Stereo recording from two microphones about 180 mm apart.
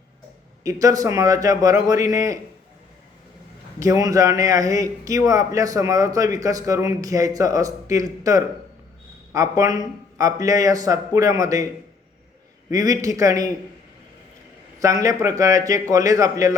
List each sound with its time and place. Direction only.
0.6 s a man's voice: 20° right (ahead or behind)
3.8 s a man's voice: 20° right (ahead or behind)
12.7 s a man's voice: 20° right (ahead or behind)
14.8 s a man's voice: 20° right (ahead or behind)